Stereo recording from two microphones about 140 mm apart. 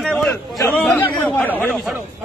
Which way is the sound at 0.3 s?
15° left (ahead or behind).